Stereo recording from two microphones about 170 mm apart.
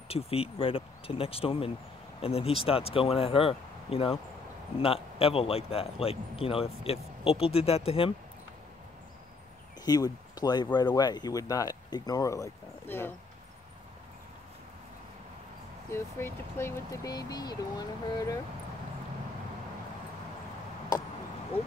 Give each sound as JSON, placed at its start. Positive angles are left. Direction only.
{"t": 0.1, "sound": "a man's voice", "side_deg": 35}
{"t": 9.8, "sound": "speech", "side_deg": 20}
{"t": 15.9, "sound": "speech", "side_deg": 15}